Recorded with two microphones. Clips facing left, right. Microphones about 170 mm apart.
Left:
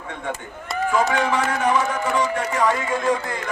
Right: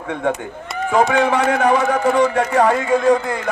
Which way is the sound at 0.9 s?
60° right (ahead or behind).